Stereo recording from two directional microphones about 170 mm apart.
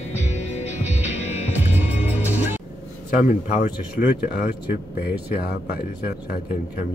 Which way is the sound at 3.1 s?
50° left (ahead or behind).